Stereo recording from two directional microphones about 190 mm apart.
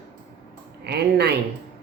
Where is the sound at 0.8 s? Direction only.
60° right (ahead or behind).